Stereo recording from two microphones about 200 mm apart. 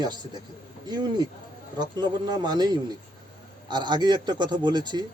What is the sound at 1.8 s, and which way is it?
A man's voice, 20° right (ahead or behind).